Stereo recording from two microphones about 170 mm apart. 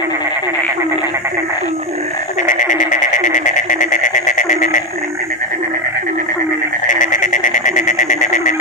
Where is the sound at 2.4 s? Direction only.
50° left (ahead or behind).